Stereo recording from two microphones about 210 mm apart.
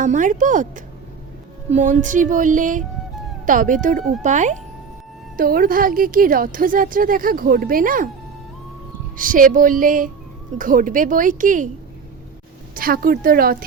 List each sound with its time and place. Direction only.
0.0 s a woman's voice: 35° right (ahead or behind)
1.7 s a woman's voice: 35° right (ahead or behind)
9.1 s a woman's voice: 40° right (ahead or behind)
12.7 s a woman's voice: 45° right (ahead or behind)